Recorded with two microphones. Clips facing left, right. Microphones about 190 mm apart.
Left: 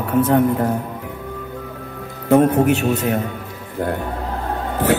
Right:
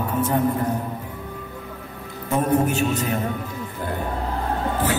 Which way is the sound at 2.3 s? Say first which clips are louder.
Left 7 dB; 65° left (ahead or behind).